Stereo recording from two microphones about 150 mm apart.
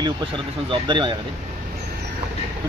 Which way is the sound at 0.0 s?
35° right (ahead or behind).